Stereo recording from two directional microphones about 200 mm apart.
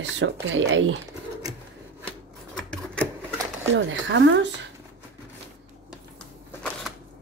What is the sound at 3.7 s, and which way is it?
Speech, 70° right (ahead or behind).